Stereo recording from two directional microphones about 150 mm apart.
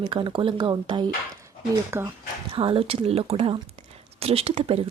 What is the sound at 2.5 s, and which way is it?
Speech, 40° right (ahead or behind).